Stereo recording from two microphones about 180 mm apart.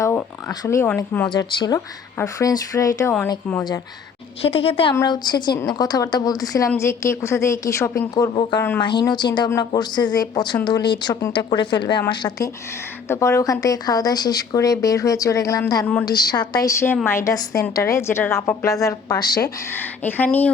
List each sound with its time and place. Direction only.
0.0 s a sound: 15° left (ahead or behind)
0.9 s a woman's voice: 10° left (ahead or behind)
1.3 s a woman's voice: 25° left (ahead or behind)
4.4 s a woman's voice: 30° left (ahead or behind); by 20.5 s 10° left (ahead or behind)